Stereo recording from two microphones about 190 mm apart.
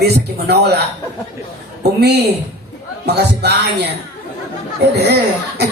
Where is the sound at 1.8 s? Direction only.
60° right (ahead or behind).